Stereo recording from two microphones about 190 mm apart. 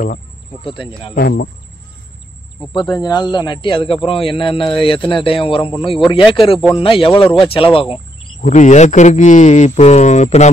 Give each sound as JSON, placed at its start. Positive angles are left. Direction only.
{"t": 0.7, "sound": "speech", "side_deg": 25}
{"t": 1.1, "sound": "speech", "side_deg": 55}
{"t": 2.7, "sound": "speech", "side_deg": 25}
{"t": 8.4, "sound": "speech", "side_deg": 40}